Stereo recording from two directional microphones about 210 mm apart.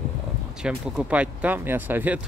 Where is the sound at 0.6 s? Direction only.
5° right (ahead or behind).